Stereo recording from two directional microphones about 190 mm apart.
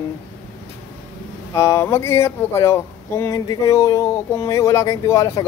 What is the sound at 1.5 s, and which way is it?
Speech, 15° left (ahead or behind).